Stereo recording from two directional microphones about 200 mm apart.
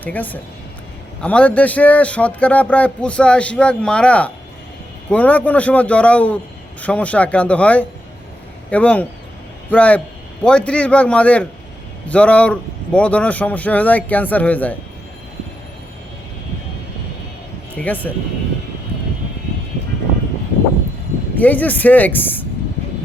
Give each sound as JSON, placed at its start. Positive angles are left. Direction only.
{"t": 0.0, "sound": "a man's voice", "side_deg": 10}
{"t": 17.7, "sound": "a man's voice", "side_deg": 10}
{"t": 21.3, "sound": "a man's voice", "side_deg": 10}